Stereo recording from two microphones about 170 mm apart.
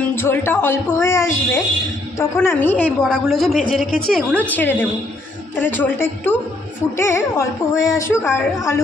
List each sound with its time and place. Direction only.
0.1 s a woman's voice: 15° left (ahead or behind)